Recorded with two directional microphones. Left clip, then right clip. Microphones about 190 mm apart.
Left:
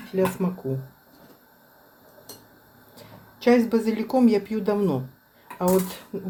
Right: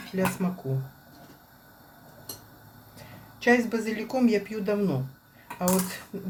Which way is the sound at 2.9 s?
30° left (ahead or behind).